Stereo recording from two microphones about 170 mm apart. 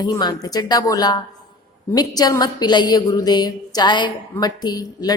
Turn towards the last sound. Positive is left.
turn(degrees=25)  # may be behind; listen again after turning